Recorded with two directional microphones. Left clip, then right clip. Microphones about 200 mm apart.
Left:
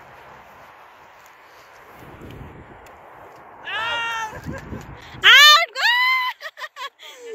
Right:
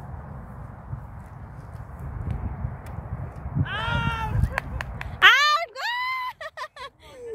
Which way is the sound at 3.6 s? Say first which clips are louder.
Left 4 dB; 45° left (ahead or behind).